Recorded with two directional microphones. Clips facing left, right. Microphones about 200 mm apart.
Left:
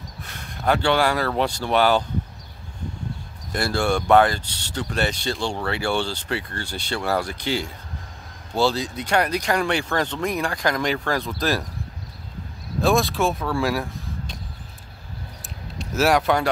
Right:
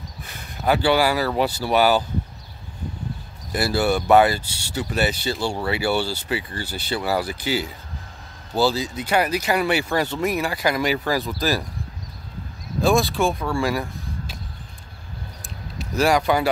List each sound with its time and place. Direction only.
0.2 s speech: centre (ahead or behind)
3.5 s speech: 5° right (ahead or behind)
12.8 s speech: centre (ahead or behind)
15.8 s speech: centre (ahead or behind)